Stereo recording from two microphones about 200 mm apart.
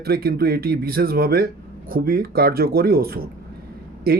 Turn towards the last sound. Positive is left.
turn(degrees=-50)  # may be behind; listen again after turning